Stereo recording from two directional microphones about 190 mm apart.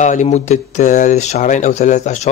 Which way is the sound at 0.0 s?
40° left (ahead or behind).